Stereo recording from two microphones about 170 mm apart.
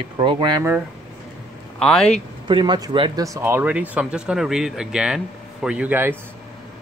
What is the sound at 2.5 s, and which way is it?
Speech, 25° right (ahead or behind).